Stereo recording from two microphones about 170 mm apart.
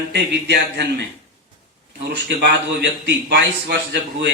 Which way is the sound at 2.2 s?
80° right.